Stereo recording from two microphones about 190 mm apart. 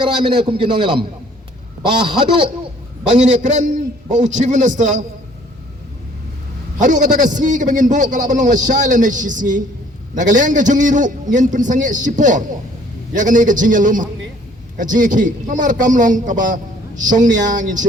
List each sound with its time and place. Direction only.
0.0 s a man's voice: 25° right (ahead or behind)
3.2 s a man's voice: 40° right (ahead or behind)
6.7 s a man's voice: 40° right (ahead or behind)